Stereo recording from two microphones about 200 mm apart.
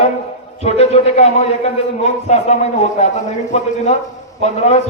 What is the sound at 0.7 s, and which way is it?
A man's voice, 30° left (ahead or behind).